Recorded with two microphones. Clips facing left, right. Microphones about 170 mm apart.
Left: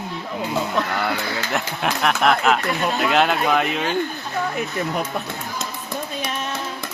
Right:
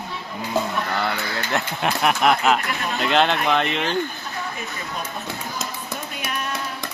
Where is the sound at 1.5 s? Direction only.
Centre (ahead or behind).